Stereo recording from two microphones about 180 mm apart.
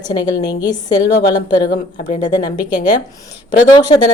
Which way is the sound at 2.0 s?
45° left (ahead or behind).